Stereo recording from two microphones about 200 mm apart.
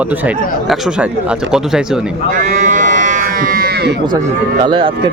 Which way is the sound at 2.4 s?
40° right (ahead or behind).